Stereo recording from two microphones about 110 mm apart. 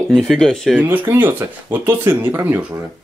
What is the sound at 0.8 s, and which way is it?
Speech, 15° right (ahead or behind).